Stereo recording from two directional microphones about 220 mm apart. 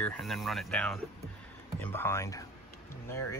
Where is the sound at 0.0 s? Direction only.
5° left (ahead or behind).